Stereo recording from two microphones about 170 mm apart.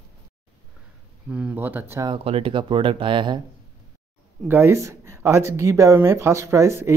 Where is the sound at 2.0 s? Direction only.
35° right (ahead or behind).